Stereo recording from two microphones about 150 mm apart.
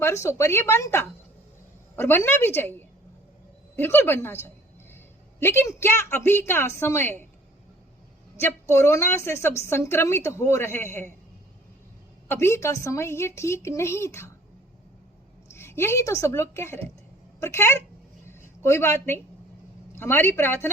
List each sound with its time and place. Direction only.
0.0 s a woman's voice: 20° left (ahead or behind)
8.4 s a woman's voice: 15° left (ahead or behind)
12.3 s a woman's voice: 15° left (ahead or behind)
15.5 s a woman's voice: 15° left (ahead or behind)
18.3 s a sound: 15° left (ahead or behind)
20.0 s a woman's voice: 15° left (ahead or behind)